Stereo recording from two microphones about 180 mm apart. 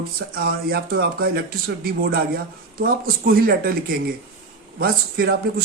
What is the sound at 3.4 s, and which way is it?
Speech, 55° right (ahead or behind).